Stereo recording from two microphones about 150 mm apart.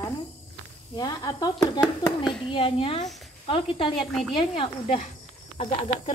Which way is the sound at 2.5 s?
35° left (ahead or behind).